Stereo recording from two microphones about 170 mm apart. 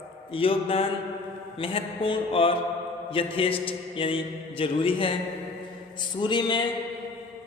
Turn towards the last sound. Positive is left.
turn(degrees=25)  # may be behind; listen again after turning